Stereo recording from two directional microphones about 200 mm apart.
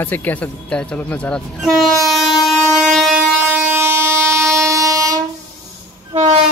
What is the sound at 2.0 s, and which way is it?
Train, centre (ahead or behind).